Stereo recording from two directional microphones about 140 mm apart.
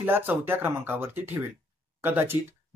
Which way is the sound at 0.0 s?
15° right (ahead or behind).